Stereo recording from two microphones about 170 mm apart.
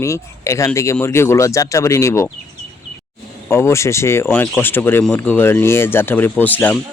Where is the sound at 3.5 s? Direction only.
15° left (ahead or behind).